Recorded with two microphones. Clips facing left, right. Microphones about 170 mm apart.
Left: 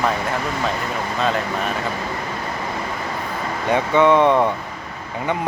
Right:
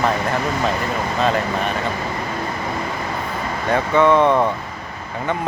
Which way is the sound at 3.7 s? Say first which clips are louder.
Even; 15° left (ahead or behind).